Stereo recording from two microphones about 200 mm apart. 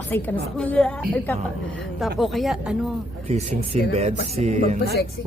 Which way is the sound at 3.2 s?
30° right (ahead or behind).